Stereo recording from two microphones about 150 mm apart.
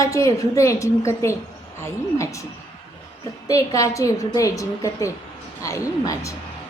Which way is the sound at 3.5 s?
20° left (ahead or behind).